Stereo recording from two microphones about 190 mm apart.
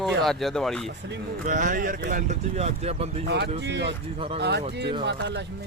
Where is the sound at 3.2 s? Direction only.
60° right (ahead or behind).